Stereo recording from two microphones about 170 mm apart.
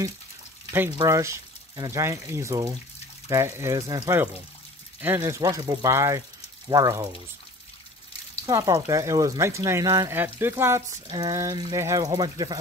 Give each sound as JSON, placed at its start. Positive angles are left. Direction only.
{"t": 0.9, "sound": "speech", "side_deg": -20}
{"t": 8.5, "sound": "speech", "side_deg": -20}